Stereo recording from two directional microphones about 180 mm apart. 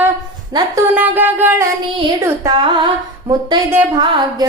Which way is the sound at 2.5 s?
30° right (ahead or behind).